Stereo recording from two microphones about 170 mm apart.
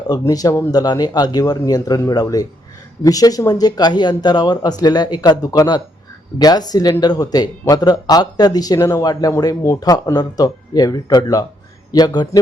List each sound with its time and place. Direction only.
0.1 s speech: 20° left (ahead or behind)